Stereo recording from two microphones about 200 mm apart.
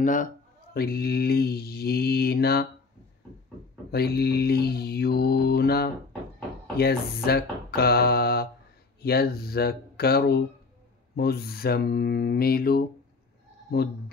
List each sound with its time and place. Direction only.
0.0 s speech: 40° left (ahead or behind)
0.7 s mantra: 50° left (ahead or behind)
3.9 s mantra: 50° left (ahead or behind)